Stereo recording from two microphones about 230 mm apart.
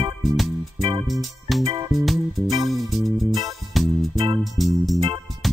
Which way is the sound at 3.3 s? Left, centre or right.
Centre.